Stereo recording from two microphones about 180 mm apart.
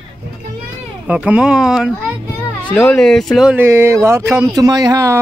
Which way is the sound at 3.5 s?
15° right (ahead or behind).